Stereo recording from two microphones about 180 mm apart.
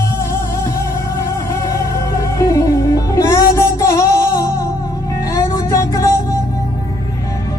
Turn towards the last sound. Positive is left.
turn(degrees=20)  # may be behind; listen again after turning